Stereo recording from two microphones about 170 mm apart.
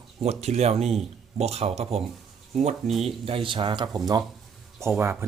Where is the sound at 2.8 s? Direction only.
Centre (ahead or behind).